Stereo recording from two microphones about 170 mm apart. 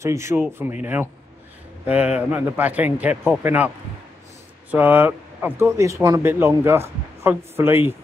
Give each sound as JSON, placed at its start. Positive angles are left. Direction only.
{"t": 0.0, "sound": "speech", "side_deg": -15}
{"t": 1.9, "sound": "speech", "side_deg": -10}